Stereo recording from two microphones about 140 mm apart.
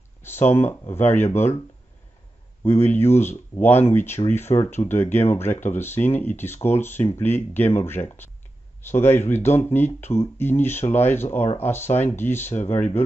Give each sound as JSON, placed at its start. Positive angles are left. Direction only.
{"t": 0.5, "sound": "speech", "side_deg": 15}
{"t": 2.6, "sound": "speech", "side_deg": 15}
{"t": 4.5, "sound": "speech", "side_deg": 35}
{"t": 4.8, "sound": "speech", "side_deg": 15}